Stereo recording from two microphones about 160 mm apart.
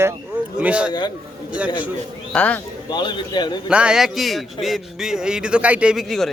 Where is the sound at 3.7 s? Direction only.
5° right (ahead or behind).